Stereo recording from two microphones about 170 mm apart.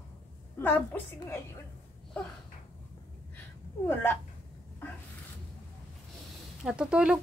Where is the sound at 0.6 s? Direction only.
10° left (ahead or behind).